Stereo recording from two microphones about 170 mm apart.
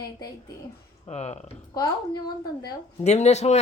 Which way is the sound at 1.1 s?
40° left (ahead or behind).